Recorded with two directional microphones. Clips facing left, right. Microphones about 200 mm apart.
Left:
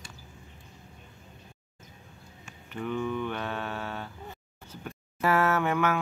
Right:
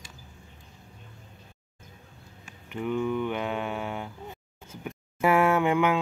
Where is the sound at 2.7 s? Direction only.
15° right (ahead or behind).